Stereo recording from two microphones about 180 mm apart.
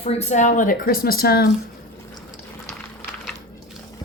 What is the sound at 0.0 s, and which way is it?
Speech, 35° left (ahead or behind).